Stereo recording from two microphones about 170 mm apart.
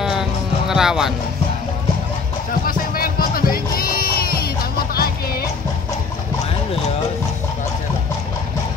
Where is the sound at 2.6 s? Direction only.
60° left (ahead or behind).